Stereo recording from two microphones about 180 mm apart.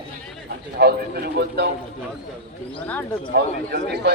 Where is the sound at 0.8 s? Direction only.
65° right (ahead or behind).